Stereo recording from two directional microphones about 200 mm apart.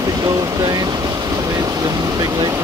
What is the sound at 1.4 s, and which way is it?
Vehicle, 15° right (ahead or behind).